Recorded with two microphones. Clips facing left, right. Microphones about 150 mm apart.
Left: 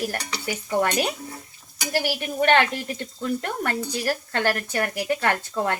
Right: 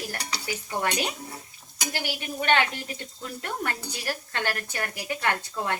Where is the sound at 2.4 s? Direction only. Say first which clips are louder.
Left 5 dB; 55° left (ahead or behind).